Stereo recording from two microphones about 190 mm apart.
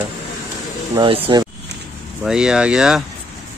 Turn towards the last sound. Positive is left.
turn(degrees=0)  # may be behind; listen again after turning